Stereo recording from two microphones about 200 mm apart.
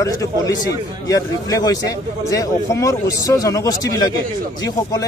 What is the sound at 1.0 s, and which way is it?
Speech, 15° left (ahead or behind).